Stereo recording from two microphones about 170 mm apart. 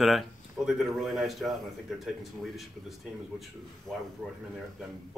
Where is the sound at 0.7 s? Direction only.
Centre (ahead or behind).